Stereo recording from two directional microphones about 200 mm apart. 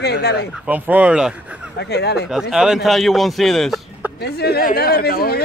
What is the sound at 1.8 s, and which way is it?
Speech, 55° left (ahead or behind).